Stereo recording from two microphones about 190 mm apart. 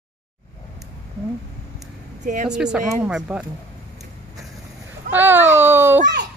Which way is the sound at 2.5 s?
5° right (ahead or behind).